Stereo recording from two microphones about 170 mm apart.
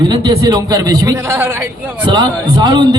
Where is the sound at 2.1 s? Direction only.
25° right (ahead or behind).